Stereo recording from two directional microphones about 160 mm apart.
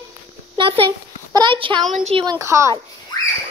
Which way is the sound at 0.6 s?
30° right (ahead or behind).